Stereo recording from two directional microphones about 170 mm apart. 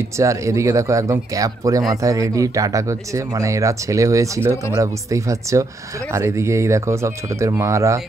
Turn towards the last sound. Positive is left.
turn(degrees=-15)  # may be behind; listen again after turning